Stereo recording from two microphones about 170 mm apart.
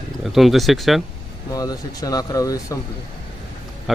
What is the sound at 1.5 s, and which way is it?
Speech, 20° left (ahead or behind).